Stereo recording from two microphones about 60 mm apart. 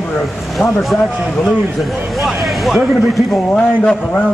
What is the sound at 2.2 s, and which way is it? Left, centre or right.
Speech, centre.